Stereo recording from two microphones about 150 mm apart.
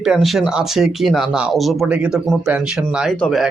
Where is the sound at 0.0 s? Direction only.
Centre (ahead or behind).